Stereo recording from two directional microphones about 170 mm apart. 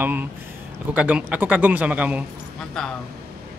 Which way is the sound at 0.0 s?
10° right (ahead or behind).